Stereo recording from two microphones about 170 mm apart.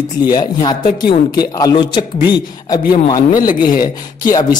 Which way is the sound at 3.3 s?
55° left (ahead or behind).